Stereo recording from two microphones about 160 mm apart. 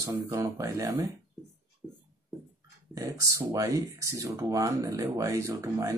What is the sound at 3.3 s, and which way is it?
Speech, 20° right (ahead or behind).